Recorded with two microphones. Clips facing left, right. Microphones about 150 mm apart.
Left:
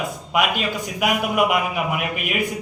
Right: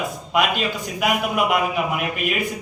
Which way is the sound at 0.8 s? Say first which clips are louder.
Left 1 dB; 10° left (ahead or behind).